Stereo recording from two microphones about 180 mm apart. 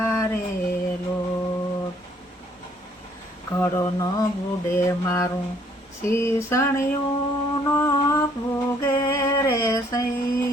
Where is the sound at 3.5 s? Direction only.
15° left (ahead or behind).